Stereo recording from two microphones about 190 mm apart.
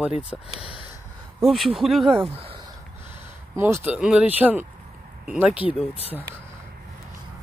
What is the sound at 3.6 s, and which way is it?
Speech, 10° right (ahead or behind).